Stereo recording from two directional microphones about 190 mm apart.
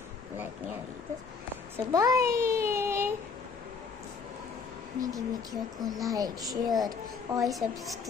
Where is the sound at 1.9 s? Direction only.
20° right (ahead or behind).